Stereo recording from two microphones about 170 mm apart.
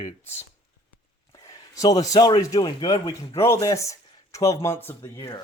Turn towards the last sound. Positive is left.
turn(degrees=25)  # may be behind; listen again after turning